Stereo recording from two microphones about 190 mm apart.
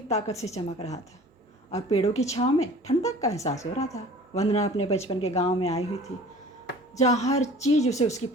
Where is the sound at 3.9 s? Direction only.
35° left (ahead or behind).